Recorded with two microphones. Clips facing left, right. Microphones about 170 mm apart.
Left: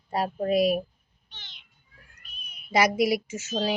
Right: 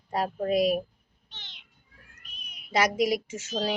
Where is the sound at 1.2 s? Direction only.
25° right (ahead or behind).